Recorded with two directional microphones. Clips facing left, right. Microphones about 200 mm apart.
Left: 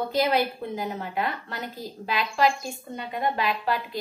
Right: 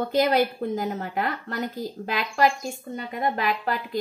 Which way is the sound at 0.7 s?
45° right (ahead or behind).